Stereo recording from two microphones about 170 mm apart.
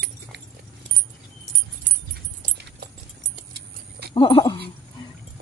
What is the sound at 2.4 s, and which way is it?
Dog, 70° right (ahead or behind).